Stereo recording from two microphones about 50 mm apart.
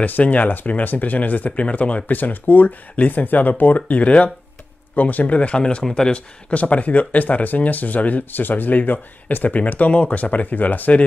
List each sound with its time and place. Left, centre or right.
0.0 s speech: left; by 6.2 s centre
6.5 s speech: left